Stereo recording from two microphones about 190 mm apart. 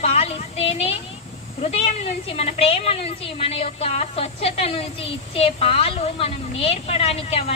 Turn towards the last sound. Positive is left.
turn(degrees=30)  # may be behind; listen again after turning